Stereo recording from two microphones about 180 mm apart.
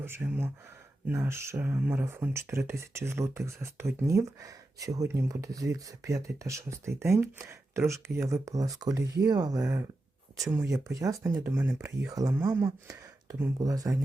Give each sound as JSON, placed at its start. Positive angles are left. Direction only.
{"t": 0.0, "sound": "speech", "side_deg": -15}